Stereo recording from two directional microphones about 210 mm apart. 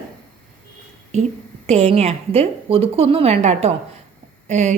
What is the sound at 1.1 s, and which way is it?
A woman's voice, 30° right (ahead or behind).